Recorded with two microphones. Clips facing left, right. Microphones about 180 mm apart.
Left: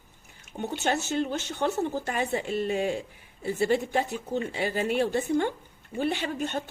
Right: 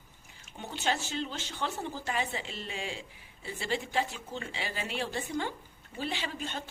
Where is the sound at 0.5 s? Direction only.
55° left (ahead or behind).